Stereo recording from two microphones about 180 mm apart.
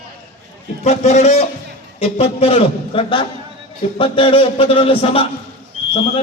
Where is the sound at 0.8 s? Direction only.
40° left (ahead or behind).